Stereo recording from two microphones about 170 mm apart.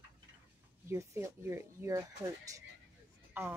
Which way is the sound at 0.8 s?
15° right (ahead or behind).